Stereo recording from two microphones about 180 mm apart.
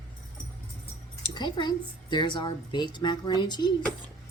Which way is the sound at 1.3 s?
25° left (ahead or behind).